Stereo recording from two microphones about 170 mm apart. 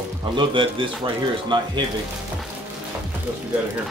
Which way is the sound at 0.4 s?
30° right (ahead or behind).